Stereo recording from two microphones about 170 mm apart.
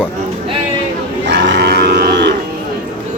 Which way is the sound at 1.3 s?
85° right.